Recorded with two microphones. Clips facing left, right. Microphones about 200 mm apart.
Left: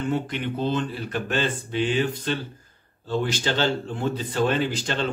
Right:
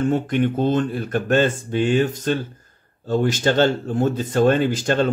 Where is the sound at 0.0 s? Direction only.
50° right (ahead or behind).